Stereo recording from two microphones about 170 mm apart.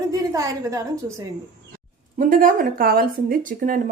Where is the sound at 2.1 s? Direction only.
55° right (ahead or behind).